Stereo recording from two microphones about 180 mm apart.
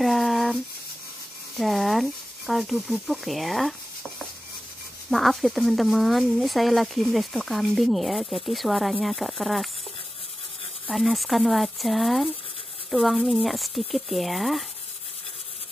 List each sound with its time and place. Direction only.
0.0 s rub: centre (ahead or behind)
1.6 s speech: centre (ahead or behind)
5.1 s speech: centre (ahead or behind)
10.9 s speech: centre (ahead or behind)